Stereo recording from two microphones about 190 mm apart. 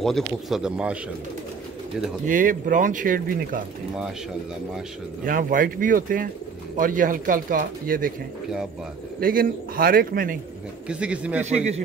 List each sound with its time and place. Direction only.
0.0 s speech: centre (ahead or behind)
2.2 s speech: 45° right (ahead or behind)
3.9 s speech: 5° right (ahead or behind)
5.2 s speech: 45° right (ahead or behind)
9.2 s speech: 50° right (ahead or behind)
10.9 s a man's voice: 5° right (ahead or behind)
11.4 s a man's voice: 35° right (ahead or behind)